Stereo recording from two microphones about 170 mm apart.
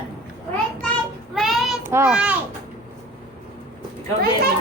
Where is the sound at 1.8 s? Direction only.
15° right (ahead or behind).